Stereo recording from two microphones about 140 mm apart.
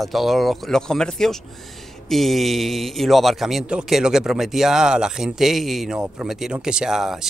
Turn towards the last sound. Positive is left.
turn(degrees=-5)  # may be behind; listen again after turning